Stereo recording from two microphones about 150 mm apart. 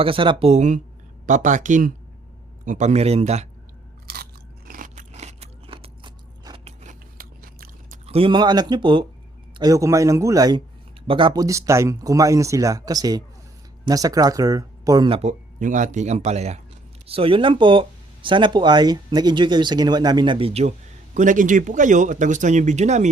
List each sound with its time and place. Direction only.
0.0 s a man's voice: 35° right (ahead or behind)
4.0 s crunch: 90° right; by 6.6 s 30° right (ahead or behind)
7.2 s biting: 75° right (ahead or behind)
8.0 s speech: 40° right (ahead or behind)
15.1 s speech: 50° right (ahead or behind)
21.2 s a man's voice: 60° right (ahead or behind)